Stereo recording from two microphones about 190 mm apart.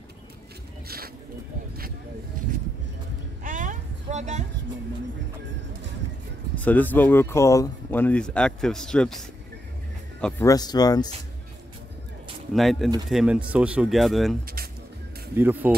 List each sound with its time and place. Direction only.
0.8 s a sound: 50° right (ahead or behind)
3.4 s a sound: 45° right (ahead or behind)
6.6 s speech: 10° left (ahead or behind)
10.4 s speech: 20° left (ahead or behind)
12.5 s speech: centre (ahead or behind)
14.4 s speech: 50° right (ahead or behind)
15.3 s speech: 10° right (ahead or behind)